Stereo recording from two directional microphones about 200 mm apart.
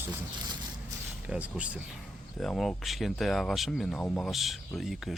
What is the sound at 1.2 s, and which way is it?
Speech, 5° right (ahead or behind).